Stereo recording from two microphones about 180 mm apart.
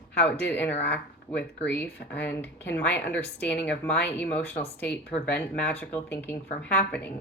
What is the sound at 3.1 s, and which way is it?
A woman's voice, 5° left (ahead or behind).